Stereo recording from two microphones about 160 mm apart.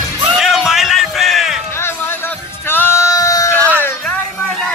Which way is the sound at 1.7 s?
15° left (ahead or behind).